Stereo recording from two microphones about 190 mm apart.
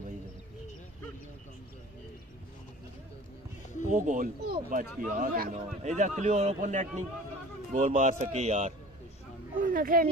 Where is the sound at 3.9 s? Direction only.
45° right (ahead or behind).